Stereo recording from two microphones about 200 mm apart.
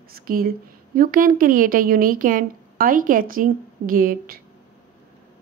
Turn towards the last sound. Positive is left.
turn(degrees=-45)  # may be behind; listen again after turning